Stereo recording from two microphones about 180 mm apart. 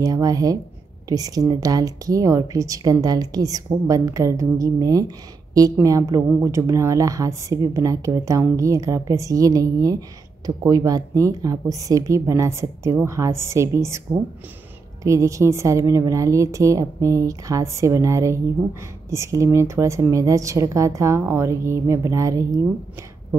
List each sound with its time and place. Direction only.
0.0 s a woman's voice: 20° right (ahead or behind)